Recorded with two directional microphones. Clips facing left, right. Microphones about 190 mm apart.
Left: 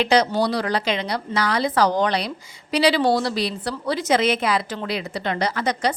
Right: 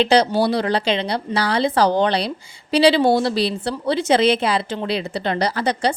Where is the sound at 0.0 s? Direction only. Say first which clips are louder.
Right 3 dB; 30° right (ahead or behind).